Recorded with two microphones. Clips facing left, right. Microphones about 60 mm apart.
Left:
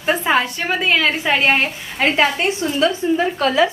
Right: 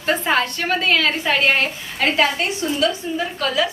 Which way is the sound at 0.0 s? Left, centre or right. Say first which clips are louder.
Left 2 dB; centre.